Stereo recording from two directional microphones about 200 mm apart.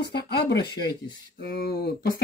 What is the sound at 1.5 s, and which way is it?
Speech, 50° left (ahead or behind).